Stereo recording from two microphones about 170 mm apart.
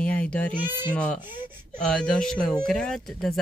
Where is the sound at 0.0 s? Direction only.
10° left (ahead or behind).